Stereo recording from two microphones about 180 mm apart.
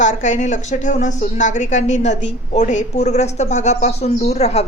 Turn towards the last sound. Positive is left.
turn(degrees=35)  # may be behind; listen again after turning